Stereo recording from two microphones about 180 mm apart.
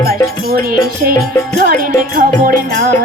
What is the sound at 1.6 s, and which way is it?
Music, 50° right (ahead or behind).